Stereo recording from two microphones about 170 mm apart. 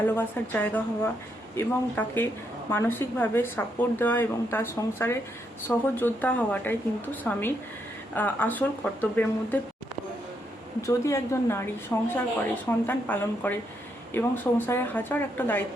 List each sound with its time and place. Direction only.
0.2 s speech: 10° left (ahead or behind)
10.8 s speech: 15° left (ahead or behind)